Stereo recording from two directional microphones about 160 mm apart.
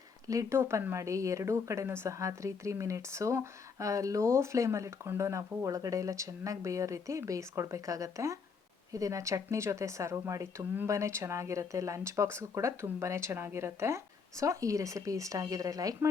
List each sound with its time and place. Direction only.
0.3 s a woman's voice: 20° right (ahead or behind)